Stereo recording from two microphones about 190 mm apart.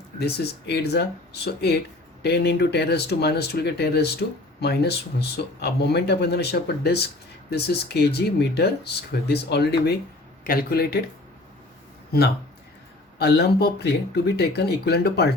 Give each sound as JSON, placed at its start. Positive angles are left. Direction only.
{"t": 0.2, "sound": "speech", "side_deg": 60}
{"t": 2.2, "sound": "speech", "side_deg": 60}
{"t": 13.1, "sound": "speech", "side_deg": 60}